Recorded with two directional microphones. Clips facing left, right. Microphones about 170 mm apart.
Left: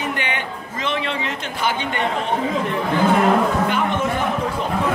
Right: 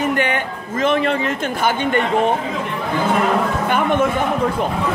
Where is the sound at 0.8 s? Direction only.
50° right (ahead or behind).